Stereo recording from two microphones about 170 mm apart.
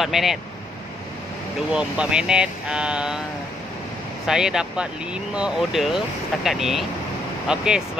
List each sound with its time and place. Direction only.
0.0 s speech: centre (ahead or behind)
1.7 s speech: 5° right (ahead or behind)
4.3 s speech: 5° right (ahead or behind)